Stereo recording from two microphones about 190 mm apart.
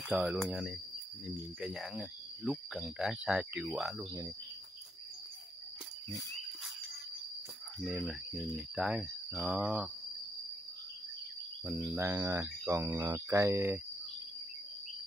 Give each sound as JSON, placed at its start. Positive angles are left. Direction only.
{"t": 0.1, "sound": "speech", "side_deg": 0}
{"t": 4.0, "sound": "cricket", "side_deg": -20}
{"t": 7.8, "sound": "speech", "side_deg": 0}
{"t": 11.6, "sound": "speech", "side_deg": -5}